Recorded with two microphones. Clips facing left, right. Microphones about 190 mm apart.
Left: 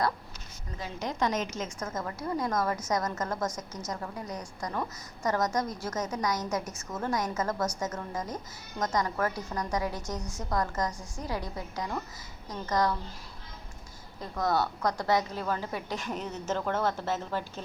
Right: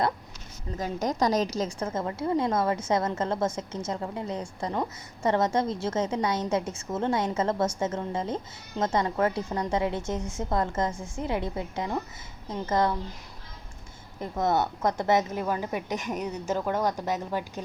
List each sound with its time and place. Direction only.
0.8 s a woman's voice: 45° right (ahead or behind); by 13.0 s 25° right (ahead or behind)
14.2 s a woman's voice: 20° right (ahead or behind)